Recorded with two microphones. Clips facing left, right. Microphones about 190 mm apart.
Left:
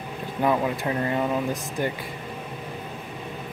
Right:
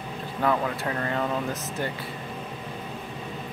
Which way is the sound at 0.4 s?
15° left (ahead or behind).